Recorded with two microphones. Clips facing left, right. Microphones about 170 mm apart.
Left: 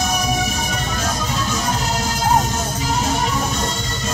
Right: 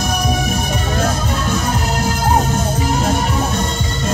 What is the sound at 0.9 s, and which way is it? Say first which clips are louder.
Music: right 6 dB; 55° right (ahead or behind).